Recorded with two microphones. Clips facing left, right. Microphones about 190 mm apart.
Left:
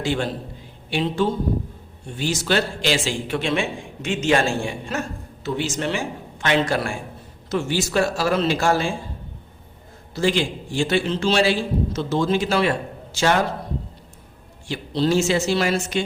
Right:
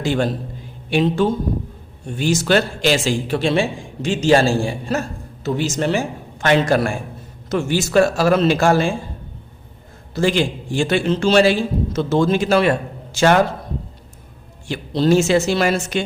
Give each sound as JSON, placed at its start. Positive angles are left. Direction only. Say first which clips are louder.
{"t": 0.0, "sound": "a man's voice", "louder": "right 4 dB", "side_deg": -45}
{"t": 10.2, "sound": "a man's voice", "louder": "right 3 dB", "side_deg": -50}
{"t": 14.7, "sound": "a man's voice", "louder": "right 4 dB", "side_deg": -50}